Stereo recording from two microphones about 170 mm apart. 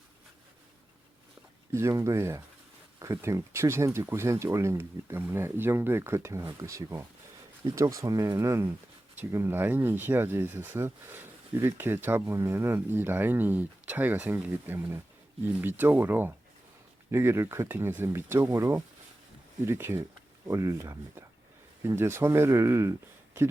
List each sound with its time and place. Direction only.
1.7 s speech: 15° right (ahead or behind)